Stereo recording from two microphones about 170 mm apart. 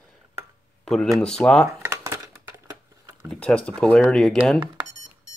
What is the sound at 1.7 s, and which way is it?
Crumpling, 15° right (ahead or behind).